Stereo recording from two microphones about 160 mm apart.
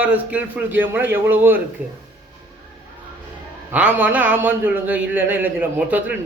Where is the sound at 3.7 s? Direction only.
10° right (ahead or behind).